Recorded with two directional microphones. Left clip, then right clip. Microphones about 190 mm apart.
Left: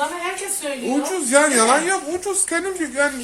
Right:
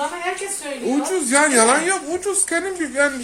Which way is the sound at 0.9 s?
15° right (ahead or behind).